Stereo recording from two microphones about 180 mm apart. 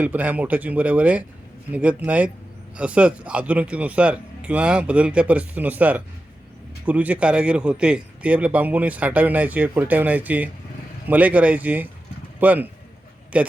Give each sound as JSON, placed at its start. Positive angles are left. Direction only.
{"t": 0.0, "sound": "a man's voice", "side_deg": -10}